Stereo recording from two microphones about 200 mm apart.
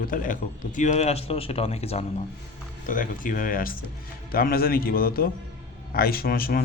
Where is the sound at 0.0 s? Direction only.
45° left (ahead or behind).